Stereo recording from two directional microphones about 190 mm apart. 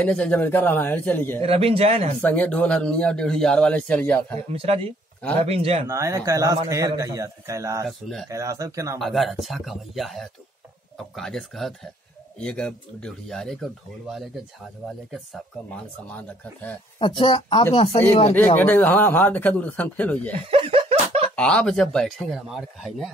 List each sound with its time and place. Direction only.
0.0 s a man's voice: 5° left (ahead or behind)
1.4 s speech: 30° right (ahead or behind)
2.2 s a man's voice: 5° left (ahead or behind)
4.5 s speech: 30° right (ahead or behind)
5.9 s a man's voice: 15° right (ahead or behind)
9.0 s a man's voice: centre (ahead or behind)
17.0 s speech: 25° left (ahead or behind)
18.6 s a man's voice: 10° left (ahead or behind)
20.4 s snicker: 30° right (ahead or behind)
21.4 s speech: 5° left (ahead or behind)